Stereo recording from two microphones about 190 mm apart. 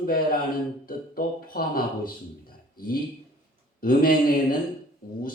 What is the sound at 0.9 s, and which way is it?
A man's voice, 50° left (ahead or behind).